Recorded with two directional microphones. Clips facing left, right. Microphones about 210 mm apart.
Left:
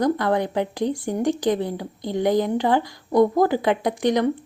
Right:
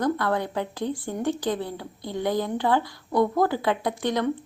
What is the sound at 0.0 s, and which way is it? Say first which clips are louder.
A woman's voice: left 4 dB; 15° left (ahead or behind).